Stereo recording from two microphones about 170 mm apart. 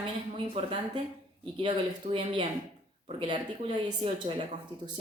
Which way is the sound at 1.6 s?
30° right (ahead or behind).